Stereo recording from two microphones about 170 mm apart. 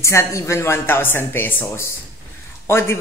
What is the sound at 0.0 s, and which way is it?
Speech, 15° left (ahead or behind).